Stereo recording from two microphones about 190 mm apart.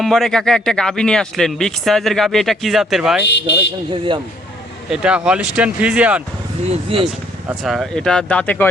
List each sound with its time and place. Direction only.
0.0 s speech: centre (ahead or behind)
3.2 s speech: 65° left (ahead or behind)
4.9 s speech: 5° right (ahead or behind)
6.7 s speech: 30° right (ahead or behind)
7.6 s speech: centre (ahead or behind)